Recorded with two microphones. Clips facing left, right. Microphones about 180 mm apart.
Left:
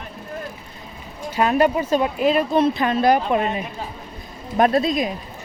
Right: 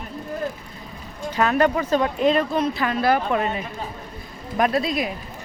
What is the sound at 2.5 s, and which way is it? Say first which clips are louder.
Speech: left 4 dB; 25° left (ahead or behind).